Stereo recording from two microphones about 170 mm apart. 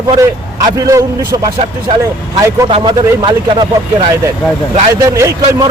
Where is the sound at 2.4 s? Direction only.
20° right (ahead or behind).